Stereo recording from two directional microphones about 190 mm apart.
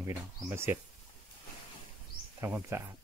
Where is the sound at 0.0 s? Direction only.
10° right (ahead or behind).